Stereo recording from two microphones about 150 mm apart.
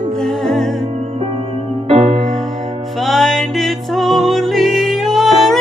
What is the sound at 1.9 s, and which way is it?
Music, 45° right (ahead or behind).